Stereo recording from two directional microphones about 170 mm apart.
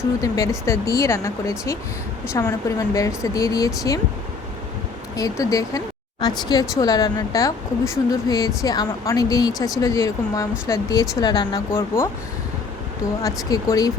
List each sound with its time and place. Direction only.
0.2 s speech: 20° left (ahead or behind)
5.1 s speech: 20° left (ahead or behind)
13.2 s speech: 20° left (ahead or behind)